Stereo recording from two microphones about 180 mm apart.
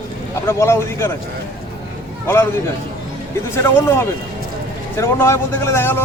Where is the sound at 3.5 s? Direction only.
15° left (ahead or behind).